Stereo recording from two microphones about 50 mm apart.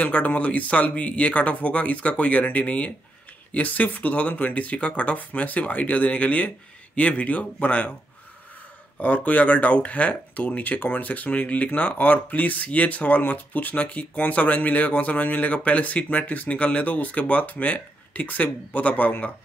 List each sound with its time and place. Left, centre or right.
0.0 s speech: left
9.0 s speech: left